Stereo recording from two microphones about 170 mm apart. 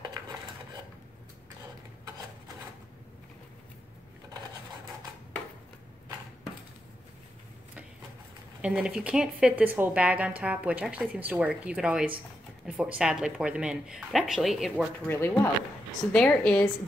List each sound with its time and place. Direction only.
0.0 s cutlery: 25° right (ahead or behind)
8.5 s speech: 5° right (ahead or behind)
15.0 s speech: 10° left (ahead or behind)